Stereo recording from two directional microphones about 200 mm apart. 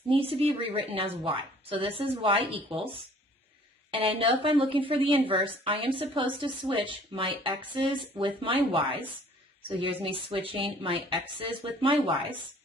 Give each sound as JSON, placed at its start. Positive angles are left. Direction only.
{"t": 0.1, "sound": "a woman's voice", "side_deg": -30}
{"t": 4.2, "sound": "a woman's voice", "side_deg": -25}